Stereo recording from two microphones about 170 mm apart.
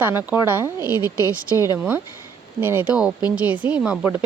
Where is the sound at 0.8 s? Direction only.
20° left (ahead or behind).